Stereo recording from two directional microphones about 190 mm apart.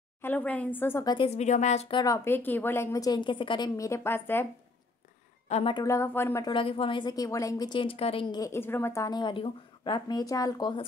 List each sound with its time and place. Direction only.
0.2 s a woman's voice: 10° left (ahead or behind)
1.1 s a woman's voice: 30° left (ahead or behind); by 4.5 s 10° left (ahead or behind)
5.5 s a woman's voice: 30° left (ahead or behind)
6.5 s a woman's voice: 30° left (ahead or behind)